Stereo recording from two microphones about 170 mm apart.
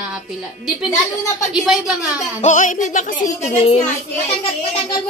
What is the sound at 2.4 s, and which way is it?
Speech, 45° left (ahead or behind).